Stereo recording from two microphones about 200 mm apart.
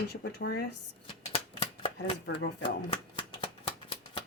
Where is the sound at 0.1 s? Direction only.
55° left (ahead or behind).